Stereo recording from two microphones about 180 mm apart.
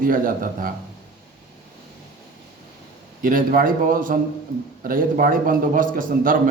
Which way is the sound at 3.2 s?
50° right (ahead or behind).